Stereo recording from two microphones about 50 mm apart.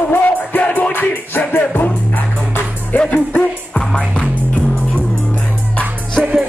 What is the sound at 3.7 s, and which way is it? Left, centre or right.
Music, left.